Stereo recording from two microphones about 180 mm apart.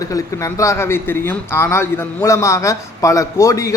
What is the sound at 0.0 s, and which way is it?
Speech, 20° left (ahead or behind).